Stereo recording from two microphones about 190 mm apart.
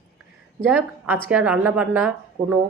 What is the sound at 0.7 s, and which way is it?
A woman's voice, 10° right (ahead or behind).